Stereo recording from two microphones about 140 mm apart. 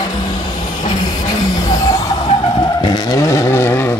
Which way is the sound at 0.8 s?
30° left (ahead or behind).